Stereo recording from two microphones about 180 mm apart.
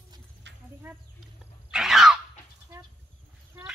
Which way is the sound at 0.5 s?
75° right (ahead or behind).